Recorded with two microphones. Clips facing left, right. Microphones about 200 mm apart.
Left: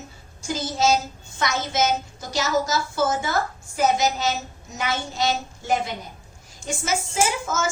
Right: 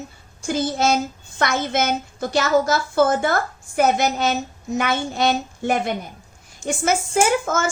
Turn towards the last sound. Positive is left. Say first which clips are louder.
# right 5 dB
turn(degrees=-55)  # may be behind; listen again after turning